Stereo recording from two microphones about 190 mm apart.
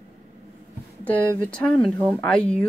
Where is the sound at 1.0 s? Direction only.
10° left (ahead or behind).